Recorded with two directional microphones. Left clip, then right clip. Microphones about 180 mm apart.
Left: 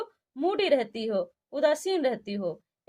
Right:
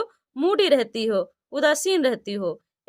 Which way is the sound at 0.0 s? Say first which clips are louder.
Right 5 dB; 50° right (ahead or behind).